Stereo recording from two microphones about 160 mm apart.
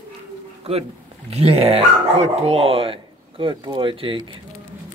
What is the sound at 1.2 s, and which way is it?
Speech, 40° right (ahead or behind).